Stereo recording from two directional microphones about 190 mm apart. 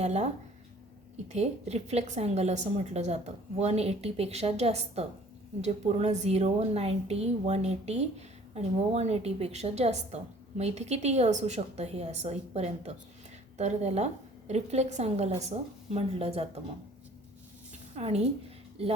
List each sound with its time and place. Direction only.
0.0 s a woman's voice: 35° right (ahead or behind)
1.3 s a woman's voice: 35° right (ahead or behind)
17.9 s a woman's voice: 35° right (ahead or behind)